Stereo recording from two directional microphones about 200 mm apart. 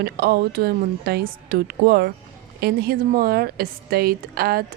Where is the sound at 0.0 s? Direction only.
50° right (ahead or behind).